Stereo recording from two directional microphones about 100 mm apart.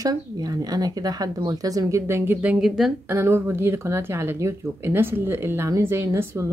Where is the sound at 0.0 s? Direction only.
40° right (ahead or behind).